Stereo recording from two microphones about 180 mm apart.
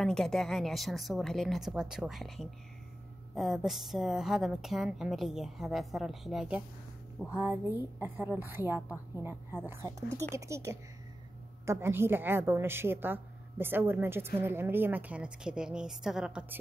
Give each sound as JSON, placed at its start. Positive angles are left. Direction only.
{"t": 0.0, "sound": "a woman's voice", "side_deg": 0}
{"t": 7.3, "sound": "a woman's voice", "side_deg": -15}